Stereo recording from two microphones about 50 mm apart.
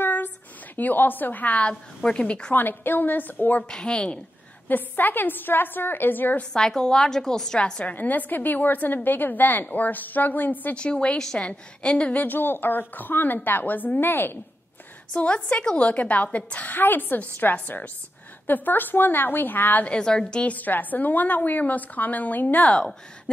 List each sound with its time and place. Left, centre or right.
0.0 s a sound: left
0.7 s a woman's voice: left
2.5 s a woman's voice: left
3.6 s a woman's voice: centre
4.6 s a woman's voice: left
6.5 s a woman's voice: centre
7.8 s a woman's voice: left
10.8 s a woman's voice: left
12.2 s a woman's voice: left
15.1 s a woman's voice: left
19.8 s a woman's voice: centre
20.4 s a woman's voice: left